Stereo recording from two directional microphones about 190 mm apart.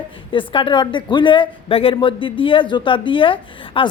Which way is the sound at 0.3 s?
25° left (ahead or behind).